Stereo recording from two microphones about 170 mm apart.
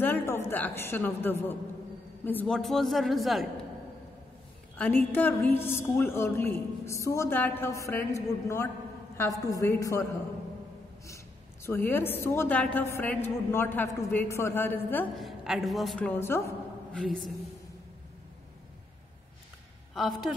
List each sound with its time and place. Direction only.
0.0 s a woman's voice: 10° left (ahead or behind)
5.1 s a woman's voice: 10° left (ahead or behind)
11.6 s a woman's voice: 10° left (ahead or behind)
15.1 s a woman's voice: centre (ahead or behind); by 16.5 s 15° left (ahead or behind)
16.9 s a woman's voice: 5° left (ahead or behind)
19.9 s a woman's voice: centre (ahead or behind)